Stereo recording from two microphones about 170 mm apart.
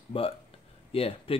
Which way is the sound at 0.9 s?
35° left (ahead or behind).